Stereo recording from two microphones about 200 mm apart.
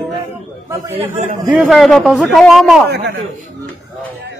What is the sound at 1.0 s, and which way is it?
Speech, 35° right (ahead or behind).